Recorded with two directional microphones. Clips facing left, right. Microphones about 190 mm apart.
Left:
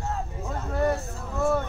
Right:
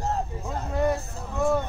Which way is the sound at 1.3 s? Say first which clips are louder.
Right 1 dB; 15° right (ahead or behind).